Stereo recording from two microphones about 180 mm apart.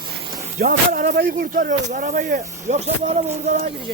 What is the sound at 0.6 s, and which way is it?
Speech, 50° right (ahead or behind).